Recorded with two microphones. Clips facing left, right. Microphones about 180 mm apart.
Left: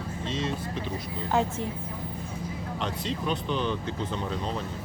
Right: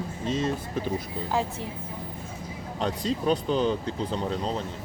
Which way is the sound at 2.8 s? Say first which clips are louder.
Right 5 dB; 40° right (ahead or behind).